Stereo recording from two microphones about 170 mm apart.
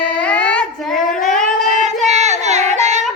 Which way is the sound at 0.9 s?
50° left (ahead or behind).